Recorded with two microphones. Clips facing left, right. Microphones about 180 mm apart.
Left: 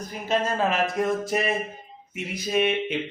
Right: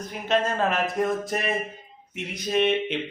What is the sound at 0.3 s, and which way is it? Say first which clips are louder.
Mantra: even; centre (ahead or behind).